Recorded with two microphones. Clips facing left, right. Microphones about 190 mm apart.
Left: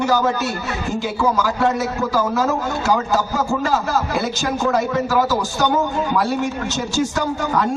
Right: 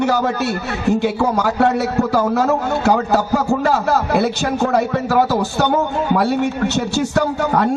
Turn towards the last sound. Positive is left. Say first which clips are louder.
# right 4 dB
turn(degrees=-60)  # may be behind; listen again after turning